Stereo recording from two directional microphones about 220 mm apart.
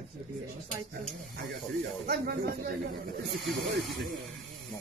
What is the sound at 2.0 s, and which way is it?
Speech, 45° right (ahead or behind).